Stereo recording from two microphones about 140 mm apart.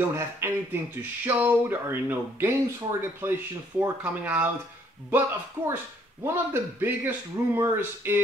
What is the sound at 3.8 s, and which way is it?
Speech, 10° right (ahead or behind).